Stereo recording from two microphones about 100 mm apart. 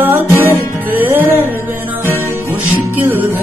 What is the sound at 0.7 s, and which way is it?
Music, 20° right (ahead or behind).